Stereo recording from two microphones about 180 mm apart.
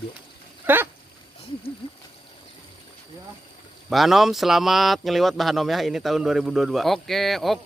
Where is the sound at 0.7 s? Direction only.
10° right (ahead or behind).